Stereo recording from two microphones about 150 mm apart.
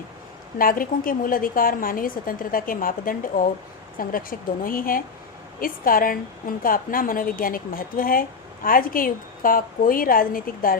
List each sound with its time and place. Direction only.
0.6 s a woman's voice: 70° left (ahead or behind)